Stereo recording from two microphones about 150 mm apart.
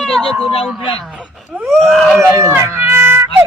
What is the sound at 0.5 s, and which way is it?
Speech, 35° left (ahead or behind).